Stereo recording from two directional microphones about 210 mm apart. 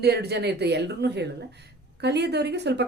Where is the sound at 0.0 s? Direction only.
50° right (ahead or behind).